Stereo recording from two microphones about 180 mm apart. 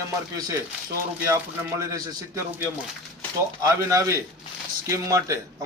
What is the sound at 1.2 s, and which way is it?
Speech, 15° right (ahead or behind).